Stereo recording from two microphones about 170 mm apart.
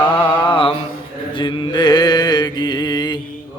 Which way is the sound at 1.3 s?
25° left (ahead or behind).